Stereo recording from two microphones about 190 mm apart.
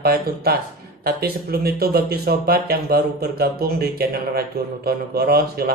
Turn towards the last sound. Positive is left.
turn(degrees=-55)  # may be behind; listen again after turning